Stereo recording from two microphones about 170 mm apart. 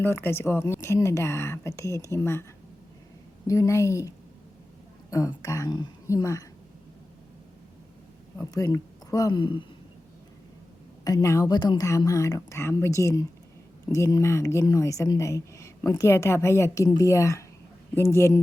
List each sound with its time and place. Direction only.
0.0 s speech: 15° left (ahead or behind)
5.1 s a woman's voice: 20° left (ahead or behind)
8.4 s speech: 20° left (ahead or behind)
11.0 s a woman's voice: 20° left (ahead or behind)